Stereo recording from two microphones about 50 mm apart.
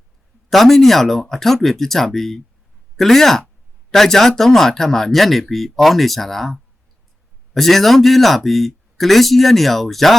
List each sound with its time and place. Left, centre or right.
0.5 s speech: centre